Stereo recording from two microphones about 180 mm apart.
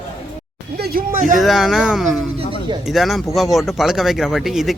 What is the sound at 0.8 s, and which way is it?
Speech, 55° right (ahead or behind).